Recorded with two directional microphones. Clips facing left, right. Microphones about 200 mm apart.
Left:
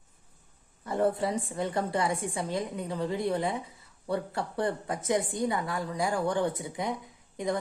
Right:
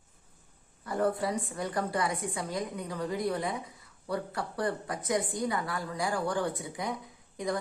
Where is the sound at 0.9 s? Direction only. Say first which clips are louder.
Left 2 dB; 25° left (ahead or behind).